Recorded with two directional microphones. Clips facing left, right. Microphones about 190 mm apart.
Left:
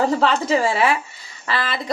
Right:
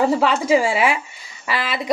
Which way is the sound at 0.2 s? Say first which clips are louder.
Right 2 dB; 10° right (ahead or behind).